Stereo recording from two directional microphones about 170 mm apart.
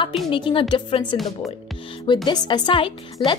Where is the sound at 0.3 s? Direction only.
30° left (ahead or behind).